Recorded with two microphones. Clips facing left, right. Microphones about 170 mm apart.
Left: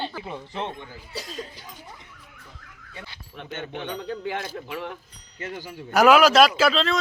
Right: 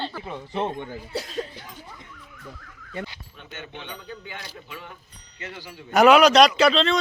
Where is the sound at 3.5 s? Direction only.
55° left (ahead or behind).